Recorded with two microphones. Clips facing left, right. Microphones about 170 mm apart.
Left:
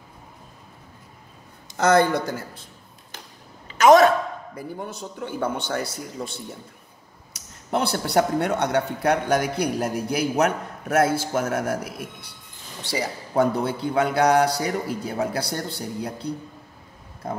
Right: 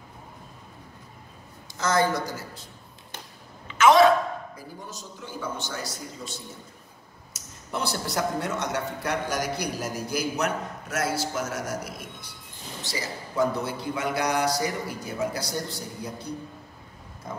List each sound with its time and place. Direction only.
1.8 s a man's voice: 65° left (ahead or behind)
3.6 s a sound: 40° left (ahead or behind)
4.6 s a man's voice: 60° left (ahead or behind)